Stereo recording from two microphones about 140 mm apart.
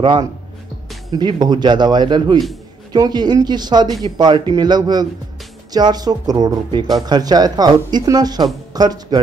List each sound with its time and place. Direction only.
0.0 s a man's voice: 35° right (ahead or behind)